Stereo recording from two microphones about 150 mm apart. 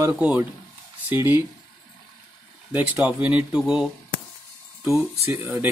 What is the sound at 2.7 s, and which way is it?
Speech, 5° right (ahead or behind).